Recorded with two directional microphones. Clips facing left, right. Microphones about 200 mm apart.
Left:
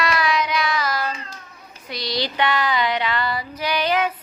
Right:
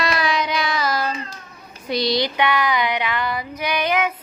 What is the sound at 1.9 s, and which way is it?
Female singing, 20° right (ahead or behind).